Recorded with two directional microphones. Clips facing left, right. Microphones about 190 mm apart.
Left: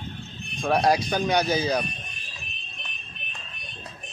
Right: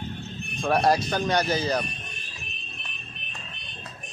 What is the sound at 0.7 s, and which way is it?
Speech, centre (ahead or behind).